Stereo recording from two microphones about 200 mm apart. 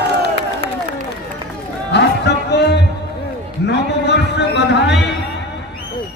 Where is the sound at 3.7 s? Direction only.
60° left (ahead or behind).